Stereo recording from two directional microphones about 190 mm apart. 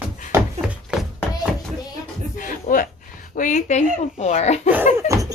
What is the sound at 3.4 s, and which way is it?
A woman's voice, 40° left (ahead or behind).